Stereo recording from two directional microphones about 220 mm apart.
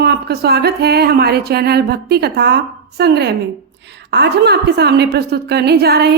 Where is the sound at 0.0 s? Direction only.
45° right (ahead or behind).